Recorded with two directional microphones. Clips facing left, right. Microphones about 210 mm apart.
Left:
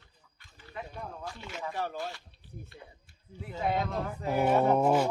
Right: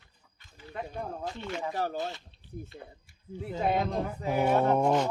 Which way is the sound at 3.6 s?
20° right (ahead or behind).